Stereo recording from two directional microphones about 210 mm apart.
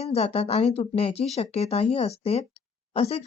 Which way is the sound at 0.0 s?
30° left (ahead or behind).